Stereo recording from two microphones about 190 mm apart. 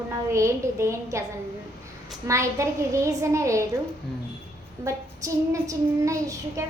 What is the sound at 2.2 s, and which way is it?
A woman's voice, 15° right (ahead or behind).